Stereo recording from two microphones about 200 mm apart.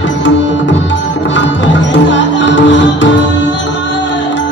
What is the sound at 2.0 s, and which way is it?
Music, 65° left (ahead or behind).